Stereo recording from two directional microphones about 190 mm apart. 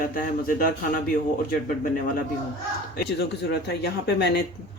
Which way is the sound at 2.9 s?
60° left (ahead or behind).